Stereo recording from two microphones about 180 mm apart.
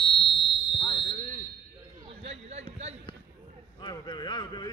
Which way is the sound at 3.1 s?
25° left (ahead or behind).